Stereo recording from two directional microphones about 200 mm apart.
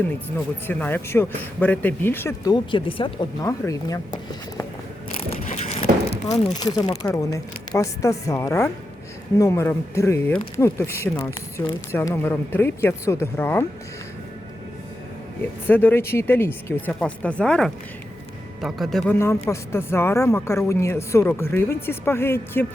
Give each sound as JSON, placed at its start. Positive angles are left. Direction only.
{"t": 0.0, "sound": "a man's voice", "side_deg": 10}
{"t": 5.3, "sound": "a sound", "side_deg": 35}
{"t": 6.2, "sound": "speech", "side_deg": 35}
{"t": 6.5, "sound": "a man's voice", "side_deg": 20}
{"t": 15.4, "sound": "a man's voice", "side_deg": 10}